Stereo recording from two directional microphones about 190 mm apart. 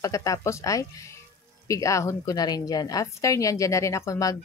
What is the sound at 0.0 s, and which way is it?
A woman's voice, 15° left (ahead or behind).